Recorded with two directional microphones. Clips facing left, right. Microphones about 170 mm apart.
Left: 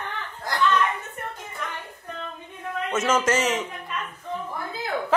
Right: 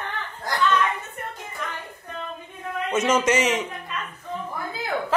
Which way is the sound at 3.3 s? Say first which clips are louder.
Right 2 dB; 15° right (ahead or behind).